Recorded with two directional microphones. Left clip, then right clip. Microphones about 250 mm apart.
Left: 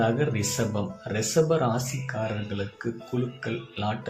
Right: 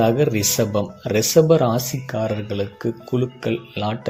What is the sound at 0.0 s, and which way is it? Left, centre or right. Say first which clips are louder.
A man's voice: right 8 dB; right.